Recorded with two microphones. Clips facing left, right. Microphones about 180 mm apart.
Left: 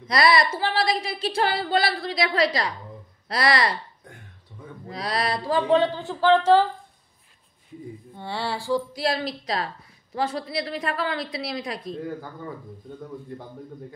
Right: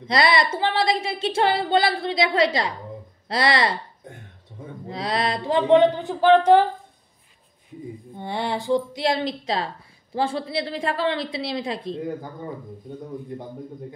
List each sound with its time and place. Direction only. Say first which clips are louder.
0.1 s speech: even; 25° right (ahead or behind)
8.1 s speech: right 3 dB; 20° right (ahead or behind)